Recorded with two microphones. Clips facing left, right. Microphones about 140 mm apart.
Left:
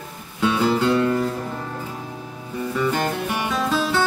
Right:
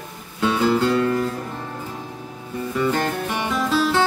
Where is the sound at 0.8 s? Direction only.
20° left (ahead or behind).